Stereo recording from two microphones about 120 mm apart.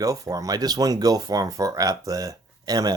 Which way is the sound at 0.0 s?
30° right (ahead or behind).